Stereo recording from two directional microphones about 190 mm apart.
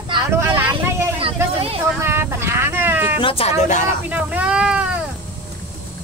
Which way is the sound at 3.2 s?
30° left (ahead or behind).